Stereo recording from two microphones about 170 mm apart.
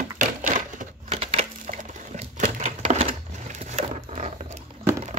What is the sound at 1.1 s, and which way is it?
Crumpling, 35° right (ahead or behind).